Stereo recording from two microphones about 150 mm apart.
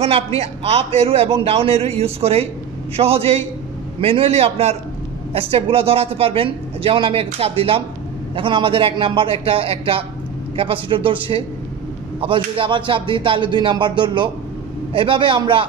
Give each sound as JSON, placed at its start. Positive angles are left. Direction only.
{"t": 0.0, "sound": "a man's voice", "side_deg": -40}